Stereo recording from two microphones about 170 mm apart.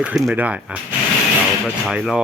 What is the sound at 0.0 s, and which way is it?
A man's voice, 5° right (ahead or behind).